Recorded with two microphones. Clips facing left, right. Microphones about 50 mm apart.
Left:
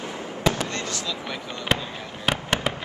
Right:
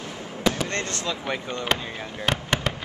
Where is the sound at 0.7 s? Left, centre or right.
Right.